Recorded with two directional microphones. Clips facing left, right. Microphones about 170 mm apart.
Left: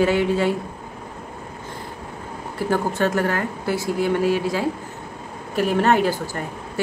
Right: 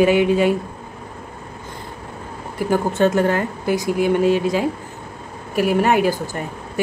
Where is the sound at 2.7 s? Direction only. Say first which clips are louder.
Right 4 dB; 25° right (ahead or behind).